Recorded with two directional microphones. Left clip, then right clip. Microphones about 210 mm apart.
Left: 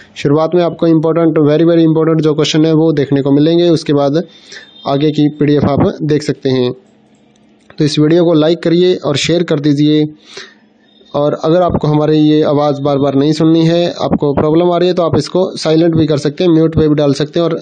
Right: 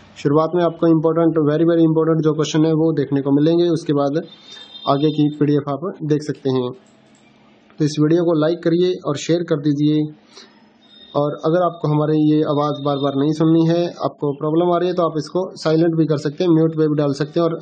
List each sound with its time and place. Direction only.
0.1 s speech: 30° left (ahead or behind)
7.7 s speech: 30° left (ahead or behind)
11.1 s speech: 40° left (ahead or behind)